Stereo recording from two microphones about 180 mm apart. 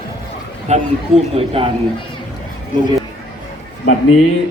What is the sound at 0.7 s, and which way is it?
Speech, 40° right (ahead or behind).